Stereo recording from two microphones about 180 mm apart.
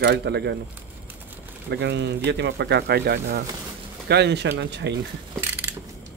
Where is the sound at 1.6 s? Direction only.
75° right (ahead or behind).